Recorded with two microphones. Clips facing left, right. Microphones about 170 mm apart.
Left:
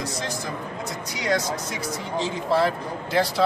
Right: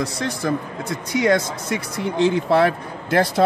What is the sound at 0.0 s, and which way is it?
Speech, 55° right (ahead or behind).